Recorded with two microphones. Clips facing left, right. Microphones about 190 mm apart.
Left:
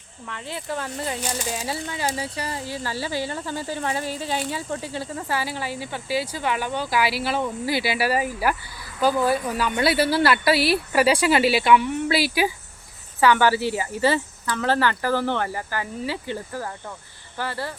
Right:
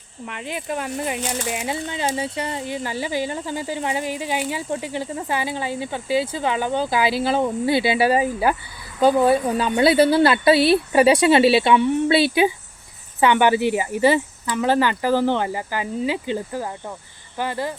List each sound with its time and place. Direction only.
0.3 s speech: 15° right (ahead or behind)